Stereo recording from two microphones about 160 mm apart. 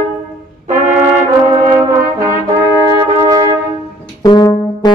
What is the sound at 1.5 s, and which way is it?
Brass instrument, 25° right (ahead or behind).